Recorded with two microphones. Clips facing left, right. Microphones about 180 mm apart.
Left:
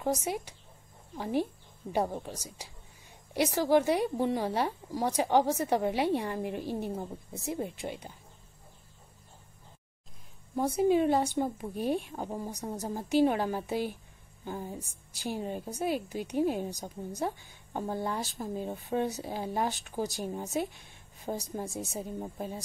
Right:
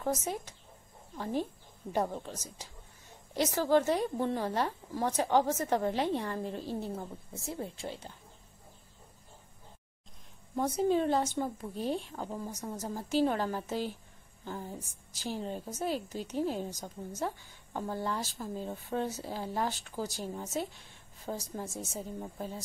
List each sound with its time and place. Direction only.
0.0 s speech: 10° left (ahead or behind)
10.5 s speech: 10° left (ahead or behind)
12.5 s a woman's voice: 35° left (ahead or behind)
12.8 s speech: 15° left (ahead or behind)